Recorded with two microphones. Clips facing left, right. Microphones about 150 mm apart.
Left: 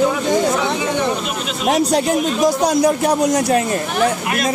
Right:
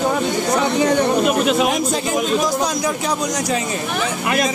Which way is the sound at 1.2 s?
50° right (ahead or behind).